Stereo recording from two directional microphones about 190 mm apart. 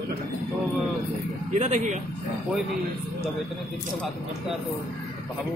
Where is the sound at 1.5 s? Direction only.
40° right (ahead or behind).